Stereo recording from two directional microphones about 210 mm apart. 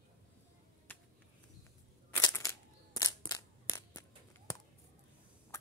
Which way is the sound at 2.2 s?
15° left (ahead or behind).